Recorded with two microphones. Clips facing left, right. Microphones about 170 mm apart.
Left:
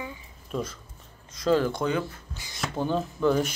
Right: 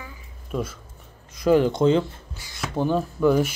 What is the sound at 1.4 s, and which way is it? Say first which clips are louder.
Speech: right 5 dB; 15° right (ahead or behind).